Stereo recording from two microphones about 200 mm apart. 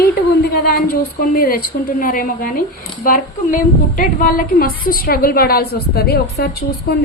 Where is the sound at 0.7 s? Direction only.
45° left (ahead or behind).